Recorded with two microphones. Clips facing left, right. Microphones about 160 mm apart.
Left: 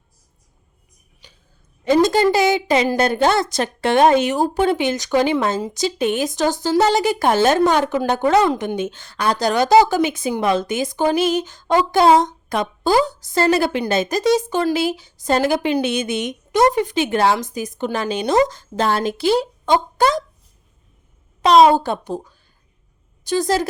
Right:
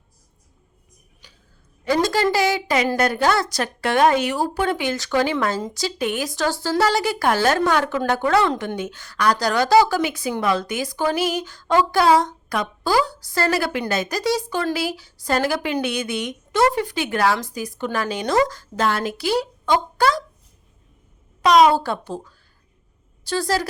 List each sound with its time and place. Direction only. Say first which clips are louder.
1.2 s a sound: left 3 dB; 20° left (ahead or behind)
1.8 s speech: left 5 dB; 20° left (ahead or behind)
21.4 s speech: left 3 dB; 25° left (ahead or behind)
21.8 s speech: left 3 dB; 15° left (ahead or behind)